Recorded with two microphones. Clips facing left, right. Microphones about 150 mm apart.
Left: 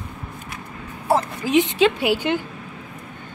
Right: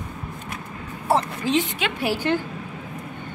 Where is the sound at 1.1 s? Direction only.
10° left (ahead or behind).